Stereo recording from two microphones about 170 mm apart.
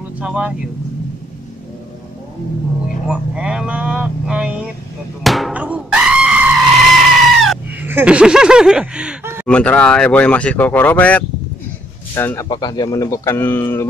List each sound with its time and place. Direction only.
0.2 s speech: 5° right (ahead or behind)
3.1 s speech: 5° right (ahead or behind)
5.2 s screaming: centre (ahead or behind)
7.8 s speech: 10° right (ahead or behind)
9.5 s speech: 10° left (ahead or behind)
12.4 s speech: 25° left (ahead or behind)